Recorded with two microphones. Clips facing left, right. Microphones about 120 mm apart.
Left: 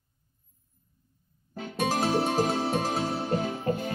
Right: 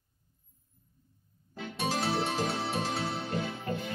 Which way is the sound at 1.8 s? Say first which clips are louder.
Left 5 dB; 45° left (ahead or behind).